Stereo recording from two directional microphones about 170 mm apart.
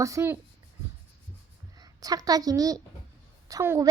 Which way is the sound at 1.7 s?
20° right (ahead or behind).